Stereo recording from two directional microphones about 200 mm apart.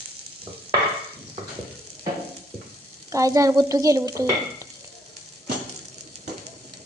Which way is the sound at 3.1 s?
15° right (ahead or behind).